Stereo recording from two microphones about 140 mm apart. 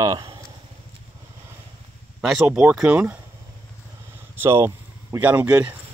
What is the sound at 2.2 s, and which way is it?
Speech, 5° right (ahead or behind).